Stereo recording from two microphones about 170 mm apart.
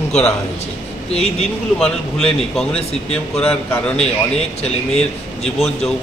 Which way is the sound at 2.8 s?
35° left (ahead or behind).